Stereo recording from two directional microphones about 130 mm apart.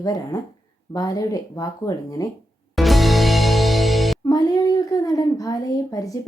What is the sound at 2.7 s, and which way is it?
Music, centre (ahead or behind).